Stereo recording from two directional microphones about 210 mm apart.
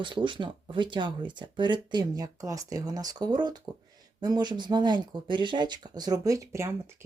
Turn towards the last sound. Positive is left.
turn(degrees=-15)  # may be behind; listen again after turning